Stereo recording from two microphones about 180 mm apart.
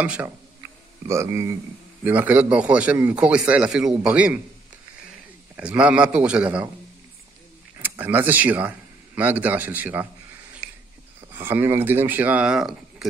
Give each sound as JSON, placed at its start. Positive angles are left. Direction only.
{"t": 0.0, "sound": "a man's voice", "side_deg": -5}
{"t": 0.6, "sound": "a sound", "side_deg": -15}
{"t": 2.0, "sound": "a man's voice", "side_deg": -10}
{"t": 5.6, "sound": "a man's voice", "side_deg": -5}
{"t": 7.7, "sound": "speech", "side_deg": -15}
{"t": 10.6, "sound": "a sound", "side_deg": -15}
{"t": 11.1, "sound": "speech", "side_deg": -10}